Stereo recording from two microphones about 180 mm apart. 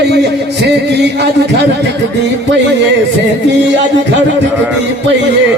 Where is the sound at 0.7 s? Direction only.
70° right (ahead or behind).